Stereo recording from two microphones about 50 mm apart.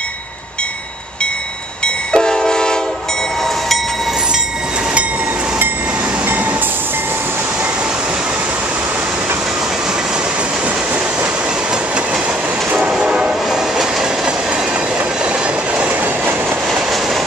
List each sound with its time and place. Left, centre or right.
2.1 s train: centre
13.0 s train: right